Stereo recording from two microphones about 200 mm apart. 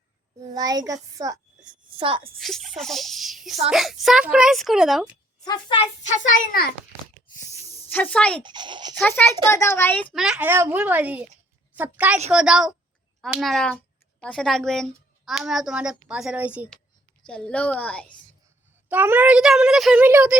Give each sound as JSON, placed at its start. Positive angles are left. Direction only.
{"t": 0.5, "sound": "a child's voice", "side_deg": -20}
{"t": 2.4, "sound": "a woman's voice", "side_deg": 0}
{"t": 5.5, "sound": "a child's voice", "side_deg": 25}
{"t": 6.1, "sound": "a child's voice", "side_deg": 40}
{"t": 7.3, "sound": "hiss", "side_deg": 20}
{"t": 7.9, "sound": "a woman's voice", "side_deg": 10}
{"t": 8.4, "sound": "a child's voice", "side_deg": -25}
{"t": 9.0, "sound": "a woman's voice", "side_deg": 10}
{"t": 17.2, "sound": "a woman's voice", "side_deg": 5}
{"t": 18.9, "sound": "a woman's voice", "side_deg": -10}